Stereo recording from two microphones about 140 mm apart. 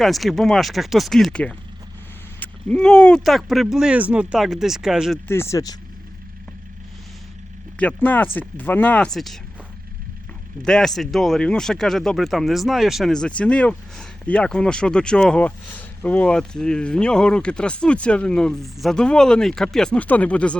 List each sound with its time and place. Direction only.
0.0 s speech: centre (ahead or behind)
5.3 s speech: 20° left (ahead or behind)
7.8 s speech: 10° left (ahead or behind)
10.6 s speech: 5° left (ahead or behind)